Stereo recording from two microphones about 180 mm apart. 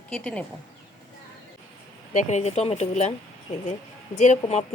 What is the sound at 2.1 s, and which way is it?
Speech, 40° left (ahead or behind).